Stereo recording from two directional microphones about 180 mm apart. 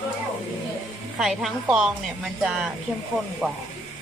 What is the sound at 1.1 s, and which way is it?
Speech, centre (ahead or behind).